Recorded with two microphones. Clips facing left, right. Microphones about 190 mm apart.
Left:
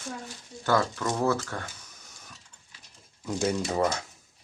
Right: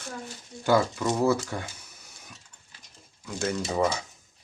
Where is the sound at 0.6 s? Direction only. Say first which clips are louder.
Right 3 dB; 10° right (ahead or behind).